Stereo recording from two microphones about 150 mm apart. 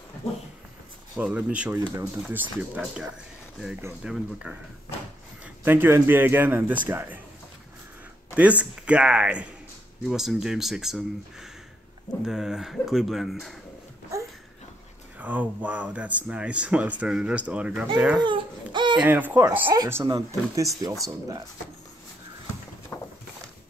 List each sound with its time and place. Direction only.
1.1 s a man's voice: 10° right (ahead or behind)
8.4 s speech: 10° right (ahead or behind)
15.1 s speech: 10° right (ahead or behind)
18.1 s baby cry: 30° right (ahead or behind)
19.0 s speech: 10° right (ahead or behind)
22.9 s a sound: 20° left (ahead or behind)